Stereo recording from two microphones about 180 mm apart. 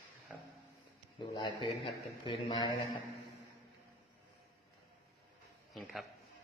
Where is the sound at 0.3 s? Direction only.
10° right (ahead or behind).